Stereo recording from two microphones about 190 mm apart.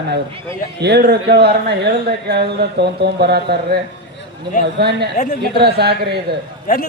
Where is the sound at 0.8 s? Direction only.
60° right (ahead or behind).